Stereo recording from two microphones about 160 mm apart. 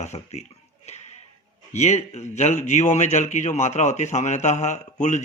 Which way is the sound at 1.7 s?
45° left (ahead or behind).